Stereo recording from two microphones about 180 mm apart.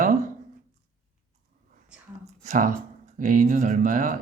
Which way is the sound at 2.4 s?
45° right (ahead or behind).